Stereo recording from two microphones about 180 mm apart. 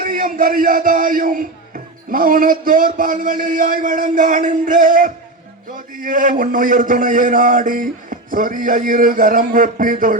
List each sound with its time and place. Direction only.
0.0 s music: 50° right (ahead or behind)